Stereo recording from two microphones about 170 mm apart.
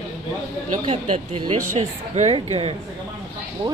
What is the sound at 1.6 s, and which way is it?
Speech, 45° right (ahead or behind).